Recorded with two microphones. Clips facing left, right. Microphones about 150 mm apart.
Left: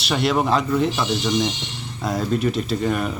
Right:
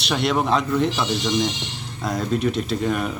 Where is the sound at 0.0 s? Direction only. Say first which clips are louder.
Left 1 dB; centre (ahead or behind).